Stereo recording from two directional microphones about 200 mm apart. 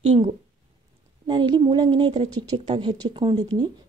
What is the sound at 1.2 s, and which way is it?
Speech, 25° right (ahead or behind).